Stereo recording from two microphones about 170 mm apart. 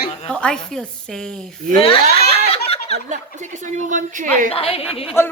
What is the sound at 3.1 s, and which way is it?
A woman's voice, 45° right (ahead or behind).